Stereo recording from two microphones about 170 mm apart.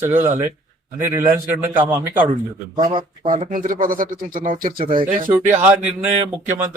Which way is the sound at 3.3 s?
50° right (ahead or behind).